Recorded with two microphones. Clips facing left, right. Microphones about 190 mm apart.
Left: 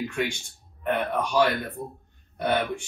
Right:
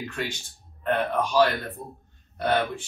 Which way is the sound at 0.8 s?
15° left (ahead or behind).